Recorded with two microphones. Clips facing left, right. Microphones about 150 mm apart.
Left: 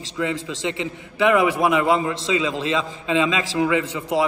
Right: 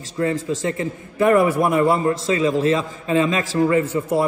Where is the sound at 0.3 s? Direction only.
90° left.